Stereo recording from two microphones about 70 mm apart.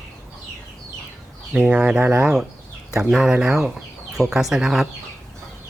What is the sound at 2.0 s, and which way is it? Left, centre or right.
Speech, right.